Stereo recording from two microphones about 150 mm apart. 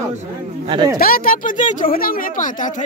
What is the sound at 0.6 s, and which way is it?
Speech, 30° right (ahead or behind).